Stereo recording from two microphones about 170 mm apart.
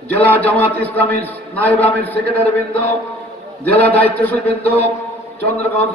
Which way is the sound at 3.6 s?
10° left (ahead or behind).